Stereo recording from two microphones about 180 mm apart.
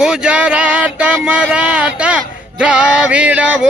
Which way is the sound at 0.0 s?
5° right (ahead or behind).